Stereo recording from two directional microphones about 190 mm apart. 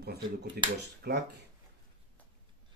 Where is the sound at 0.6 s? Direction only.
55° right (ahead or behind).